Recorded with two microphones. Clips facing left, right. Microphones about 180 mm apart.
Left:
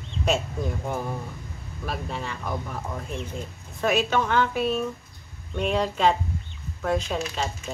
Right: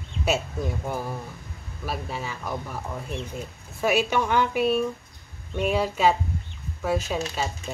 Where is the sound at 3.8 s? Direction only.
10° right (ahead or behind).